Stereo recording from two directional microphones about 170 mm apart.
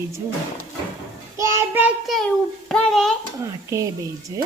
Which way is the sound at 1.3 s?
20° right (ahead or behind).